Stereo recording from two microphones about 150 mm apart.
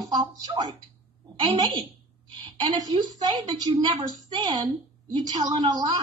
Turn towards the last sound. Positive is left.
turn(degrees=-25)  # may be behind; listen again after turning